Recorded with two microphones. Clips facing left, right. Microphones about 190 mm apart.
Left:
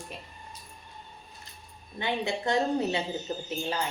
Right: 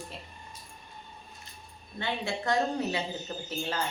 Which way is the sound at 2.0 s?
20° left (ahead or behind).